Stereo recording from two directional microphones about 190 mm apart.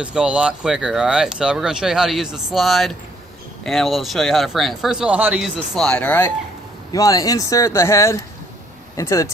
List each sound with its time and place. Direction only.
0.0 s speech: 5° right (ahead or behind); by 9.3 s 15° left (ahead or behind)